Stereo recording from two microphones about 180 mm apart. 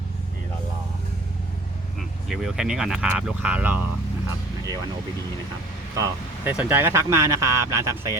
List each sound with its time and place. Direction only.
2.0 s speech: centre (ahead or behind)
6.0 s speech: 15° right (ahead or behind)